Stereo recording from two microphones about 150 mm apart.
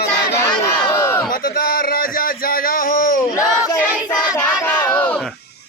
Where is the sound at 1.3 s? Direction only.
75° left (ahead or behind).